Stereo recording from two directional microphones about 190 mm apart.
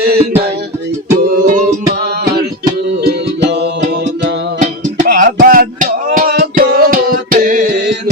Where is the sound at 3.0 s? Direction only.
60° right (ahead or behind).